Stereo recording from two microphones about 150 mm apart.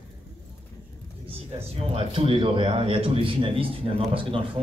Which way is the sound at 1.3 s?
40° right (ahead or behind).